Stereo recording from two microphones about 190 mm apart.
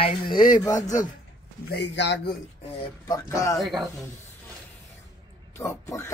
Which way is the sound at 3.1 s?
15° left (ahead or behind).